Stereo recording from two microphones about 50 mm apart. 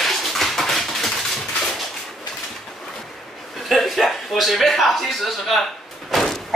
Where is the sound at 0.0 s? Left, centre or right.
Centre.